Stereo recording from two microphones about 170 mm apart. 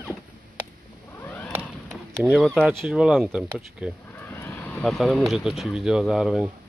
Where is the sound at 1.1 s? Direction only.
10° left (ahead or behind).